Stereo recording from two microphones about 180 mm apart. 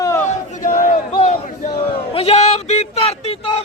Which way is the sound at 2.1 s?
35° left (ahead or behind).